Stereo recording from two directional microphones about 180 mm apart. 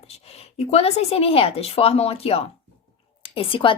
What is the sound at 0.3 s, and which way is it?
Speech, 35° left (ahead or behind).